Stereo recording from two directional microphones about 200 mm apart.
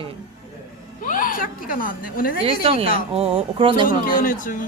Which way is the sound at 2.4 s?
30° right (ahead or behind).